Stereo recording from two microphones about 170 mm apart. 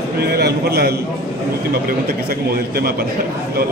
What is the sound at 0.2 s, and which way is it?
Speech, 70° right (ahead or behind).